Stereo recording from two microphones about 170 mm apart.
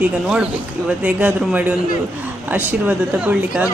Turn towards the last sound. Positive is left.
turn(degrees=-5)  # may be behind; listen again after turning